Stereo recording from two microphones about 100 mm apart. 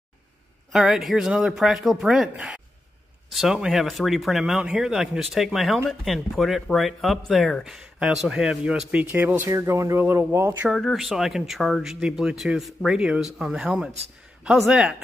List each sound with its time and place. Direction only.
0.7 s speech: 5° right (ahead or behind)
9.1 s speech: 20° right (ahead or behind)
10.7 s speech: centre (ahead or behind)